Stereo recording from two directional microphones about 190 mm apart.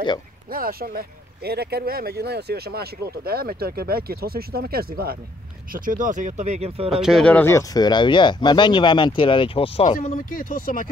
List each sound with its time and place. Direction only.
0.5 s speech: 50° right (ahead or behind); by 6.9 s 35° right (ahead or behind)
6.9 s speech: centre (ahead or behind); by 9.9 s 30° left (ahead or behind)
9.9 s speech: 45° left (ahead or behind)